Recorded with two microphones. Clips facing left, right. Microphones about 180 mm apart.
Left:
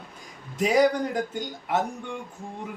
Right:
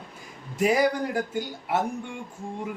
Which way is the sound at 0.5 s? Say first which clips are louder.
Left 1 dB; 10° right (ahead or behind).